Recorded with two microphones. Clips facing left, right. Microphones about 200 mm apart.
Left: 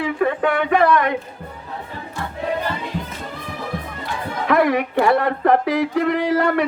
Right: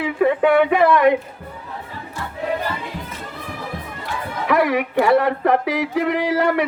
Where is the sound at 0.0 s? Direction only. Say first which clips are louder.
Right 2 dB; 15° right (ahead or behind).